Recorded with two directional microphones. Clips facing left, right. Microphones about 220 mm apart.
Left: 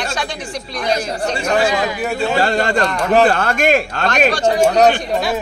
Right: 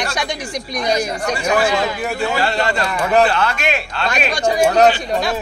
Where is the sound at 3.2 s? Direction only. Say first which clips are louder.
Left 3 dB; 50° left (ahead or behind).